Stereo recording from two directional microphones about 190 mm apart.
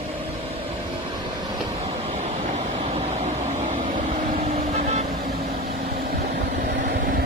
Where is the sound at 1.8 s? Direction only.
35° right (ahead or behind).